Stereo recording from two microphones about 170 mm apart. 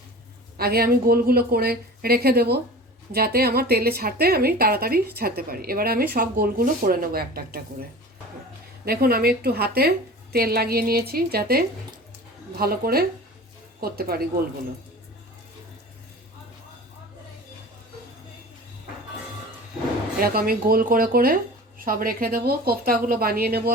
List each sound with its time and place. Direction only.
0.5 s a woman's voice: 65° right (ahead or behind)
20.1 s a woman's voice: 60° right (ahead or behind)